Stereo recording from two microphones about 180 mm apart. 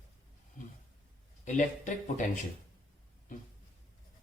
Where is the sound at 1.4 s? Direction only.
45° left (ahead or behind).